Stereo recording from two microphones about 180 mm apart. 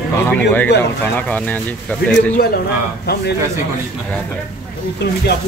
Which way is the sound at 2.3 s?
60° left (ahead or behind).